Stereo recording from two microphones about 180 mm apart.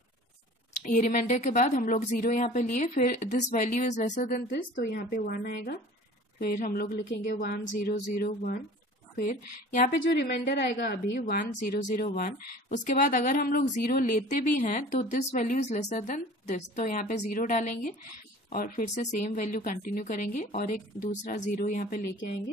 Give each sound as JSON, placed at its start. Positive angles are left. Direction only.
{"t": 0.8, "sound": "speech", "side_deg": 45}
{"t": 4.8, "sound": "speech", "side_deg": 60}
{"t": 10.5, "sound": "speech", "side_deg": 65}